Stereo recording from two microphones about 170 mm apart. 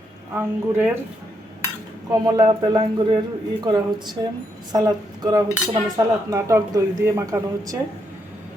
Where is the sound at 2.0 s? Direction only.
25° right (ahead or behind).